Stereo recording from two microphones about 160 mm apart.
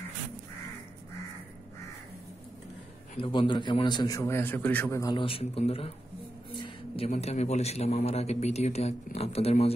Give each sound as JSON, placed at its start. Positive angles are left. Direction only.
{"t": 3.2, "sound": "a man's voice", "side_deg": 30}
{"t": 4.2, "sound": "speech", "side_deg": 15}
{"t": 5.0, "sound": "a man's voice", "side_deg": 30}